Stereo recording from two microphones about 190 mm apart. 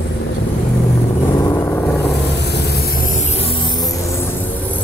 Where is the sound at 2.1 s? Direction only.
60° left (ahead or behind).